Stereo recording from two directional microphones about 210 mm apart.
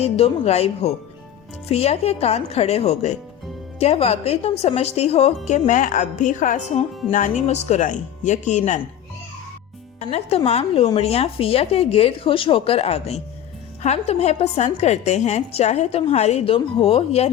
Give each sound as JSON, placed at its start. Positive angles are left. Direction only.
{"t": 0.0, "sound": "a woman's voice", "side_deg": 30}
{"t": 10.0, "sound": "a woman's voice", "side_deg": 30}